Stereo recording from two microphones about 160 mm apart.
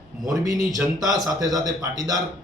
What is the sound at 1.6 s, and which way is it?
Speech, 25° right (ahead or behind).